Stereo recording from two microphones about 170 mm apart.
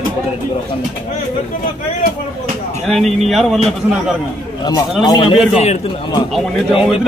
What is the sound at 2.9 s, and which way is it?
A man's voice, centre (ahead or behind).